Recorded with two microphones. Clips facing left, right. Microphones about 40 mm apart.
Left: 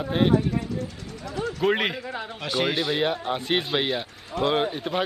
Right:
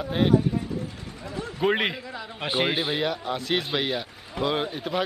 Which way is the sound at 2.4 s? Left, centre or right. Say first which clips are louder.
Even; right.